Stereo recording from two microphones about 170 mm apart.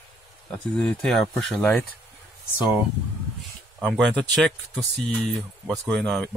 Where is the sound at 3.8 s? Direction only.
5° left (ahead or behind).